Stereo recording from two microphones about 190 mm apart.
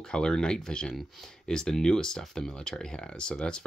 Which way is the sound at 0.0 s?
5° left (ahead or behind).